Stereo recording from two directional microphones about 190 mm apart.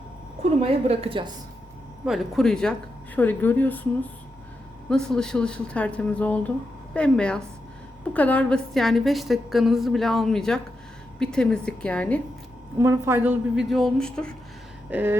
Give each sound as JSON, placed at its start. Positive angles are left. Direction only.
{"t": 0.6, "sound": "a woman's voice", "side_deg": -30}
{"t": 2.0, "sound": "a woman's voice", "side_deg": 0}
{"t": 4.9, "sound": "a woman's voice", "side_deg": 5}
{"t": 12.8, "sound": "a woman's voice", "side_deg": -15}
{"t": 14.8, "sound": "a sound", "side_deg": -10}